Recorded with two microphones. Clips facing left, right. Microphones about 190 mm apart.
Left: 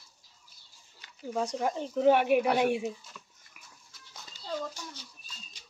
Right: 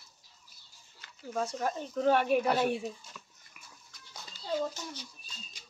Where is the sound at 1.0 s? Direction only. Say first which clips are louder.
Left 2 dB; 15° left (ahead or behind).